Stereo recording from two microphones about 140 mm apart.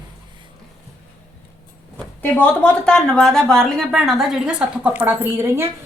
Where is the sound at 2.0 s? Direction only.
10° left (ahead or behind); by 5.6 s 15° right (ahead or behind).